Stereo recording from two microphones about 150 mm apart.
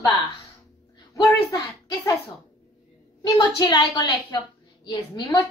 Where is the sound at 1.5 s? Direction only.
25° left (ahead or behind).